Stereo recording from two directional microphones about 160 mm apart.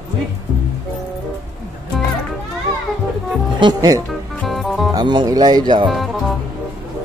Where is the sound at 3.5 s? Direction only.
25° right (ahead or behind).